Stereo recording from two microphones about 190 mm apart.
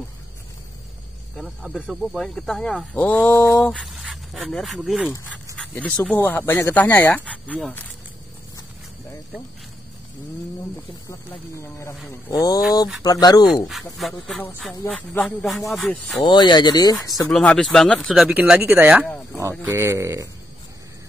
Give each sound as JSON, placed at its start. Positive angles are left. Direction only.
{"t": 1.3, "sound": "speech", "side_deg": 0}
{"t": 11.1, "sound": "speech", "side_deg": 15}
{"t": 13.7, "sound": "speech", "side_deg": 0}
{"t": 16.3, "sound": "speech", "side_deg": 25}
{"t": 17.3, "sound": "speech", "side_deg": 5}